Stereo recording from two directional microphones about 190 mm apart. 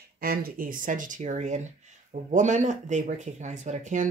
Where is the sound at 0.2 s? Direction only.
50° right (ahead or behind).